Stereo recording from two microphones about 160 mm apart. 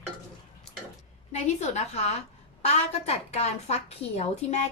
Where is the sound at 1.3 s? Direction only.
45° left (ahead or behind).